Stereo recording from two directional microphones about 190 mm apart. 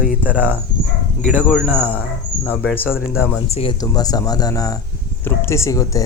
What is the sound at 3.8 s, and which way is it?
Speech, 20° left (ahead or behind).